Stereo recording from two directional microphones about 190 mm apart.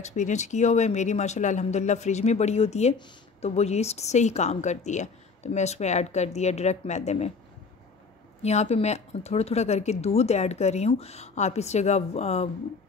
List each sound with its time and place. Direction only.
0.0 s speech: 40° left (ahead or behind)
8.4 s speech: 35° left (ahead or behind)